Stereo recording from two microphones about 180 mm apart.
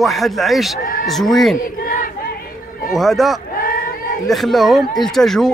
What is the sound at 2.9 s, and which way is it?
Speech, centre (ahead or behind).